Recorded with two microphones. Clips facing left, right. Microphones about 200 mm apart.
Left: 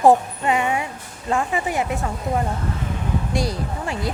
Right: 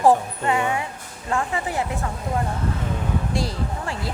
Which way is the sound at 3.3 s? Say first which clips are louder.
Left 2 dB; 15° left (ahead or behind).